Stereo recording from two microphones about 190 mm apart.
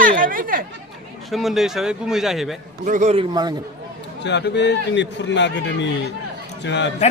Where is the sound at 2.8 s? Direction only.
40° right (ahead or behind).